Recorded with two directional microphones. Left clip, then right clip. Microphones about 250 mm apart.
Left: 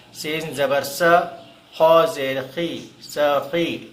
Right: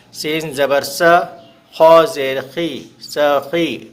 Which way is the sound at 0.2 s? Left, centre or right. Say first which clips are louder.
Right 5 dB; right.